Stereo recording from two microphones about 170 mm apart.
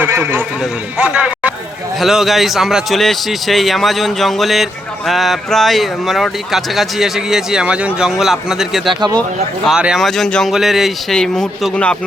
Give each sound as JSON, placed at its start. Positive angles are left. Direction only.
{"t": 0.0, "sound": "a man's voice", "side_deg": -15}
{"t": 8.9, "sound": "speech", "side_deg": -25}
{"t": 9.6, "sound": "a man's voice", "side_deg": -5}